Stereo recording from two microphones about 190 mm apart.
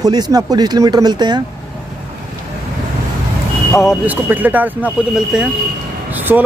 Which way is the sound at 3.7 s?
5° right (ahead or behind).